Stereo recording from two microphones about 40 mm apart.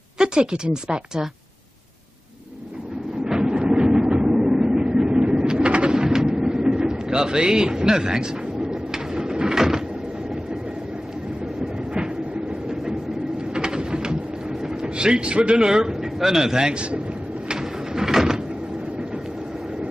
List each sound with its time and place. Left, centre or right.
0.2 s a sound: centre
0.8 s speech: centre
3.3 s train: centre
6.0 s vehicle: centre
13.6 s pigeon: centre
14.6 s speech: centre
17.5 s a sound: centre